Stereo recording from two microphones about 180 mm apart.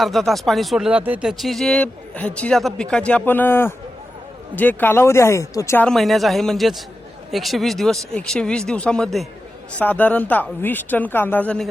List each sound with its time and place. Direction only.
0.0 s speech: centre (ahead or behind)